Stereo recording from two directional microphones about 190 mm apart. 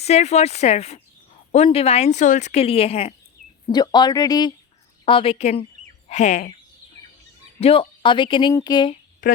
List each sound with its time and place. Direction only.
0.0 s speech: 35° left (ahead or behind)
3.7 s speech: 20° left (ahead or behind); by 6.5 s 40° left (ahead or behind)
7.6 s speech: 30° left (ahead or behind)
9.2 s a woman's voice: 45° left (ahead or behind)